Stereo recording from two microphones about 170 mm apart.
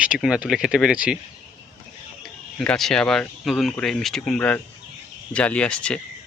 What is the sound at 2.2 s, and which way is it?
Speech, 5° left (ahead or behind).